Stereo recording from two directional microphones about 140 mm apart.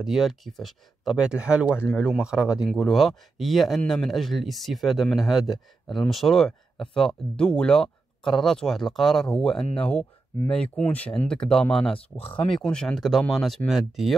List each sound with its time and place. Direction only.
0.0 s speech: centre (ahead or behind)
12.2 s speech: 40° left (ahead or behind)
12.4 s speech: 5° left (ahead or behind)